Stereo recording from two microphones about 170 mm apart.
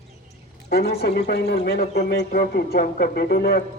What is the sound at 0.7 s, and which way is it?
A man's voice, 70° left (ahead or behind).